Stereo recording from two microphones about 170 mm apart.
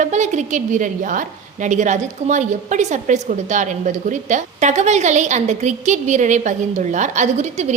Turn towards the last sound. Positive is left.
turn(degrees=-45)  # may be behind; listen again after turning